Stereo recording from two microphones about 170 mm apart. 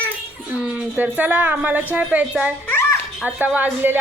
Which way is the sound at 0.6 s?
10° right (ahead or behind).